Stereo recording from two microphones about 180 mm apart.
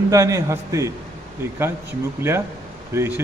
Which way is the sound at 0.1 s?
15° right (ahead or behind).